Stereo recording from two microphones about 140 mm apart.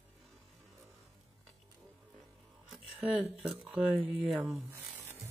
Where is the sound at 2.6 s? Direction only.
5° right (ahead or behind).